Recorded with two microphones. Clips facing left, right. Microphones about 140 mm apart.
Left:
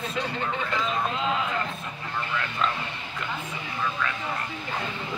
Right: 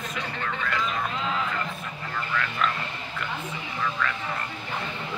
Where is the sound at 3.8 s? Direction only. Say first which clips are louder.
Right 1 dB; 5° left (ahead or behind).